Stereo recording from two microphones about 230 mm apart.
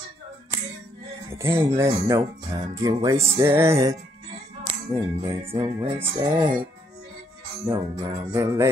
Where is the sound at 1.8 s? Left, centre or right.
Centre.